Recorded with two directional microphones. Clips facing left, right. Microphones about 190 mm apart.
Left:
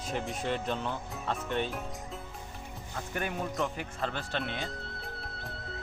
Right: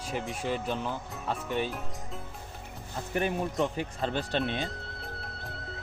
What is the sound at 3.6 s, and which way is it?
Speech, 20° right (ahead or behind).